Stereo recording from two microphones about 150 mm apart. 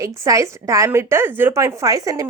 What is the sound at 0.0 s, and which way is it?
A woman's voice, 20° right (ahead or behind).